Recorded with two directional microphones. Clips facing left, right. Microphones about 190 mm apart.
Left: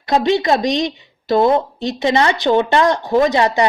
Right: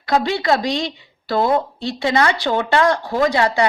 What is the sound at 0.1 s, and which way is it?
A woman's voice, 20° left (ahead or behind).